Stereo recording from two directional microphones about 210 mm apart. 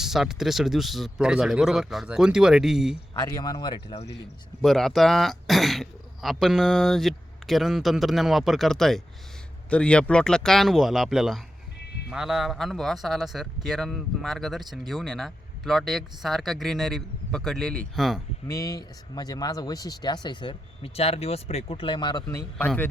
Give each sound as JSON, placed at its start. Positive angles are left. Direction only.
{"t": 0.0, "sound": "speech", "side_deg": 0}
{"t": 3.2, "sound": "speech", "side_deg": 15}
{"t": 4.6, "sound": "speech", "side_deg": 0}
{"t": 18.4, "sound": "speech", "side_deg": 15}